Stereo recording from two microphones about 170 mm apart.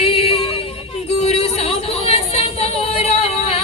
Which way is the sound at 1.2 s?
40° left (ahead or behind).